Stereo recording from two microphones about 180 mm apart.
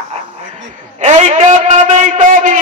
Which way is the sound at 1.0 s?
40° right (ahead or behind).